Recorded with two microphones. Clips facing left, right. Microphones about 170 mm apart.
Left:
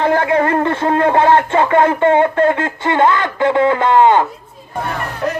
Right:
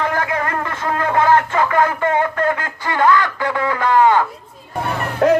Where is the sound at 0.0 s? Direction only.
30° left (ahead or behind).